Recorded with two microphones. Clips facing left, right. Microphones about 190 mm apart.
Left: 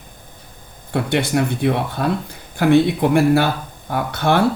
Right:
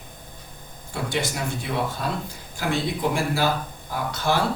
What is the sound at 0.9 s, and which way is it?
Speech, 60° left (ahead or behind).